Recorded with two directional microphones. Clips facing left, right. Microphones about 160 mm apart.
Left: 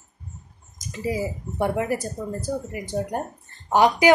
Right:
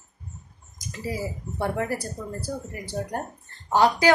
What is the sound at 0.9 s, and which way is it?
A woman's voice, 15° left (ahead or behind).